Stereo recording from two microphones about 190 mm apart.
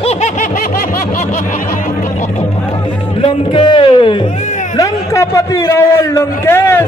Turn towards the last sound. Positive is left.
turn(degrees=10)  # may be behind; listen again after turning